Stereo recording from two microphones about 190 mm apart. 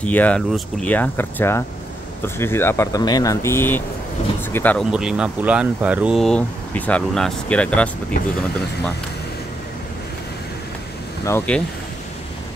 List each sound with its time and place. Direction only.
0.0 s speech: 5° left (ahead or behind)
4.9 s speech: 5° right (ahead or behind)
11.2 s speech: 10° left (ahead or behind)